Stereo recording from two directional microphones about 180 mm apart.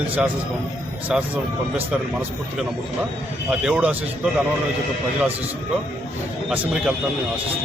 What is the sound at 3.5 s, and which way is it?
Speech, 5° right (ahead or behind).